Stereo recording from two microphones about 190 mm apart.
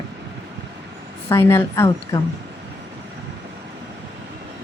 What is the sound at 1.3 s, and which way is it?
Speech, 15° left (ahead or behind).